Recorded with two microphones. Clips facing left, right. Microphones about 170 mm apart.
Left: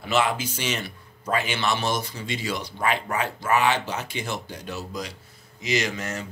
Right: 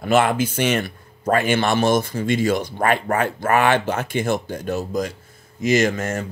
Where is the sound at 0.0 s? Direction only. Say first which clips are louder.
Right 6 dB; 50° right (ahead or behind).